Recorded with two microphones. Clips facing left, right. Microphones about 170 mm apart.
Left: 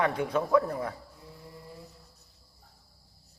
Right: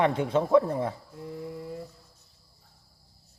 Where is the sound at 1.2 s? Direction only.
70° right (ahead or behind).